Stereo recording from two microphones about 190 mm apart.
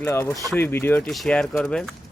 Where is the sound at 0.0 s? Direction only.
15° left (ahead or behind).